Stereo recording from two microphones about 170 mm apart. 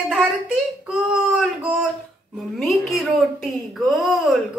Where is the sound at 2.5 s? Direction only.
Centre (ahead or behind).